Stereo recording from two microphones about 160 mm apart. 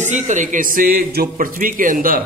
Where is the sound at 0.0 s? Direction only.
50° right (ahead or behind).